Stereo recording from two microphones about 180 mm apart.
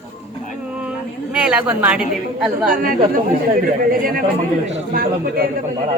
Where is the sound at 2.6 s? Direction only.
50° right (ahead or behind).